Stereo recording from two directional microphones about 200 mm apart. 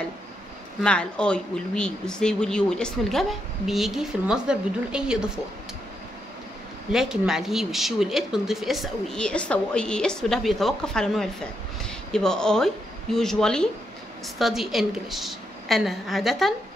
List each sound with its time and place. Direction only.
0.8 s speech: 5° left (ahead or behind)
6.9 s speech: centre (ahead or behind)